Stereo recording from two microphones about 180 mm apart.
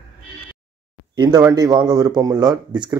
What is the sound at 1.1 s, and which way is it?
A man's voice, 20° right (ahead or behind).